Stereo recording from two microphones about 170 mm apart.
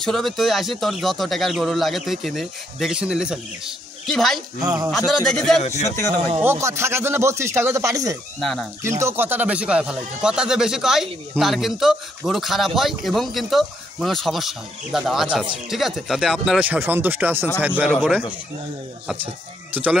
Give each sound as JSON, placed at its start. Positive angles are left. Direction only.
{"t": 0.0, "sound": "speech", "side_deg": 0}
{"t": 4.6, "sound": "speech", "side_deg": -25}
{"t": 4.9, "sound": "speech", "side_deg": 0}
{"t": 5.6, "sound": "speech", "side_deg": 40}
{"t": 6.4, "sound": "speech", "side_deg": -15}
{"t": 8.4, "sound": "speech", "side_deg": 0}
{"t": 8.8, "sound": "speech", "side_deg": -15}
{"t": 19.7, "sound": "speech", "side_deg": -10}